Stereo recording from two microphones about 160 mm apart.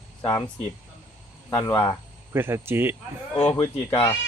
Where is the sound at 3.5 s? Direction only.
40° left (ahead or behind).